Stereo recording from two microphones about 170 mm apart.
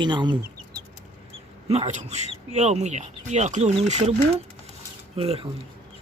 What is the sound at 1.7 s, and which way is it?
Speech, 40° right (ahead or behind).